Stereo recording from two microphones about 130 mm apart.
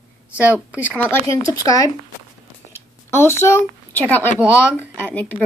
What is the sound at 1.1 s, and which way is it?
Speech, 25° left (ahead or behind).